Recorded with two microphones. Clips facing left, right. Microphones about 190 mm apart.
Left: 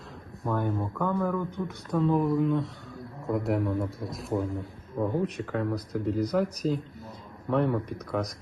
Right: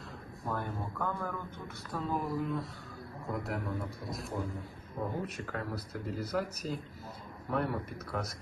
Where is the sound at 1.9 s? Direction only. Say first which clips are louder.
Left 10 dB; centre (ahead or behind).